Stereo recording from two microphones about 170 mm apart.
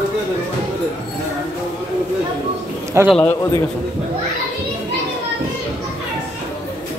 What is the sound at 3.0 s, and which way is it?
Speech, 15° right (ahead or behind).